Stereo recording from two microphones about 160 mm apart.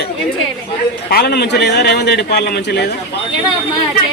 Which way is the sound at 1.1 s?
80° left.